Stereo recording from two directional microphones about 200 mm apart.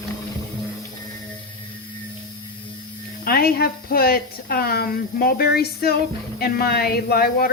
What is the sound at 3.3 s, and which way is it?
A woman's voice, 50° left (ahead or behind).